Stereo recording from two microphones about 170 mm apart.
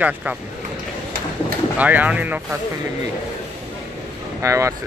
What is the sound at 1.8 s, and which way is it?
Speech, 10° right (ahead or behind).